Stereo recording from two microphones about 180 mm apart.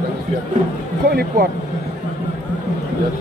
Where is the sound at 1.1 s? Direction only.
60° right (ahead or behind).